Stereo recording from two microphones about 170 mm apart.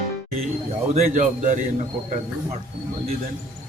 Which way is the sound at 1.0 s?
45° right (ahead or behind).